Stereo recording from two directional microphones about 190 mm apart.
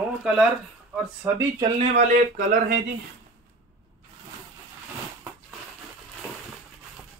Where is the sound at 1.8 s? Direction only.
40° right (ahead or behind).